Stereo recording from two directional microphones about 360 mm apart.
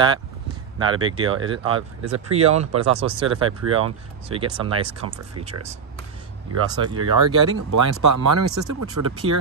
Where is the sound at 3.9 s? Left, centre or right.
Centre.